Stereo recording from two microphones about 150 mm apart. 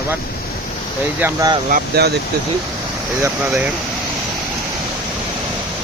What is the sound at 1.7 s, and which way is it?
Speech, 80° right.